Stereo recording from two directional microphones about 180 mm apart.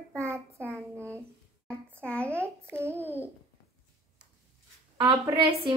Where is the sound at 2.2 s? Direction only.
15° right (ahead or behind).